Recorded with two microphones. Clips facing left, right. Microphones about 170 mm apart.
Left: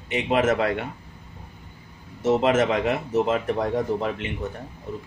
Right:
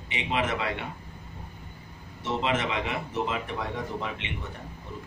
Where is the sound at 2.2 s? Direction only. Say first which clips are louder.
Left 9 dB; 45° left (ahead or behind).